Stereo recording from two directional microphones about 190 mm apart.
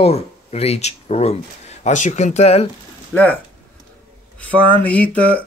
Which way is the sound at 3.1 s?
10° left (ahead or behind).